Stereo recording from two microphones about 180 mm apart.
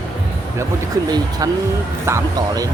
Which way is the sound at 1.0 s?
20° right (ahead or behind).